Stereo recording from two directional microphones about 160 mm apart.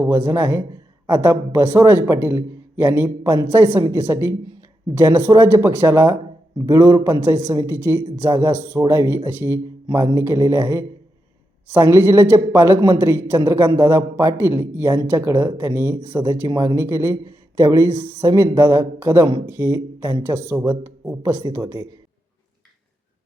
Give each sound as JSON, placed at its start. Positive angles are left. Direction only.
{"t": 0.0, "sound": "a man's voice", "side_deg": -15}